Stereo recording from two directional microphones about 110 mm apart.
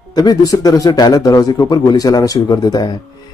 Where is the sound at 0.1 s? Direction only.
35° left (ahead or behind).